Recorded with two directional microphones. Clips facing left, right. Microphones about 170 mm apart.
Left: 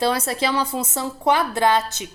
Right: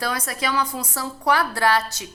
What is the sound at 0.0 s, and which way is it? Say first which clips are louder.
A woman's voice: left 5 dB; 25° left (ahead or behind).